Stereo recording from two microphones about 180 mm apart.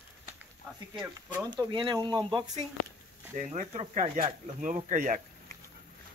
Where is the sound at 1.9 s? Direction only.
20° right (ahead or behind).